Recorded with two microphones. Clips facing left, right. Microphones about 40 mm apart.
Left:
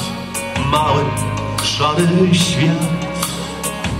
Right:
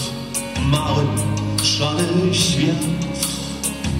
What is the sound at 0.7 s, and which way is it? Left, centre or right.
Music, left.